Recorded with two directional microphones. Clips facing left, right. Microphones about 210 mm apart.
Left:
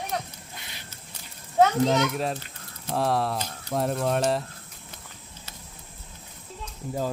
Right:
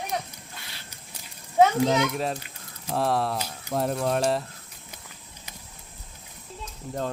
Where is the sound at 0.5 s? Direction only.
20° left (ahead or behind).